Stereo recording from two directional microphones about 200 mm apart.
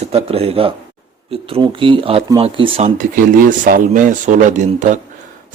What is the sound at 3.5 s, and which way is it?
Speech, 40° right (ahead or behind).